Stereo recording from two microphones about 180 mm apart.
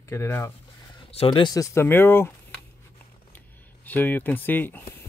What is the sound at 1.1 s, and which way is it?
Speech, 30° left (ahead or behind).